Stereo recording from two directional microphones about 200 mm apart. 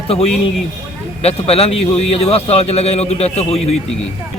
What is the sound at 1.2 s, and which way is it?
Speech, 30° left (ahead or behind).